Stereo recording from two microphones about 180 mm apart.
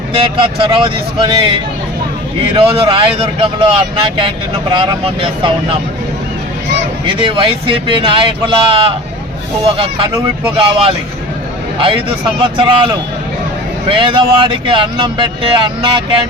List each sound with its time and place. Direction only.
0.1 s speech: 30° right (ahead or behind)
2.6 s speech: 30° right (ahead or behind)
7.1 s speech: 30° right (ahead or behind)
12.4 s speech: 30° right (ahead or behind)